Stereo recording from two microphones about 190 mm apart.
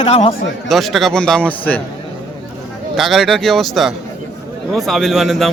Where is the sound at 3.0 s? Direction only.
Centre (ahead or behind).